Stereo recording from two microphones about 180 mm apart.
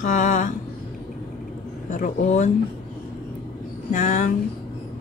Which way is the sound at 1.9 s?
45° left (ahead or behind).